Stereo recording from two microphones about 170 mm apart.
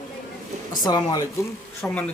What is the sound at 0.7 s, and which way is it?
Speech, 25° left (ahead or behind).